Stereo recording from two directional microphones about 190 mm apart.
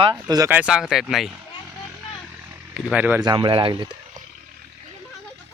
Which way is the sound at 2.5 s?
10° right (ahead or behind).